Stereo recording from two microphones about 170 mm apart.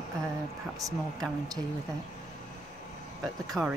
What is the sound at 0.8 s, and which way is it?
Speech, 20° right (ahead or behind).